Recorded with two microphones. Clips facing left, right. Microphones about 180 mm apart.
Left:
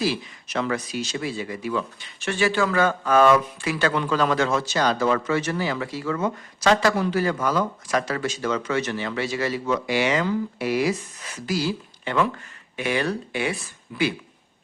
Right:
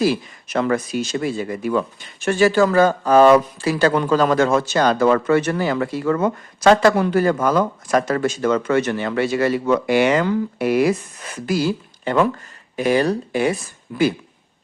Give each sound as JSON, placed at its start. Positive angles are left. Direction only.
{"t": 0.0, "sound": "speech", "side_deg": -50}